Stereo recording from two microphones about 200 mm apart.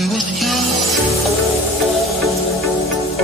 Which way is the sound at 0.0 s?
Centre (ahead or behind).